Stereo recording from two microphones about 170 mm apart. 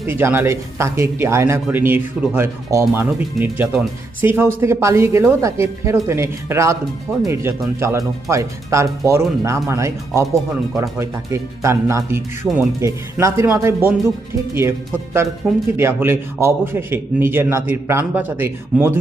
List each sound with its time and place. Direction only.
0.1 s speech: 15° right (ahead or behind)